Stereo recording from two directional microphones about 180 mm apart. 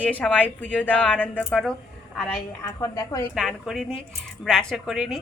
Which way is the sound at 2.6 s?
20° left (ahead or behind).